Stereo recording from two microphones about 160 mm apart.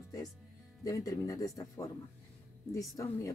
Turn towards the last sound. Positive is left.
turn(degrees=20)  # may be behind; listen again after turning